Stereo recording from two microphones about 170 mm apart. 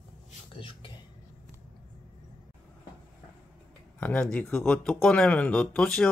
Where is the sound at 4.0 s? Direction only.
10° left (ahead or behind).